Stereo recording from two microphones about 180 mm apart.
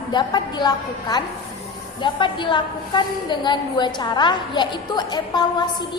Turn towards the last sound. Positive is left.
turn(degrees=25)  # may be behind; listen again after turning